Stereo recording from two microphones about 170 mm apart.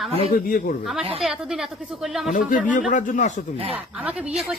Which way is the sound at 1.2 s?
Centre (ahead or behind).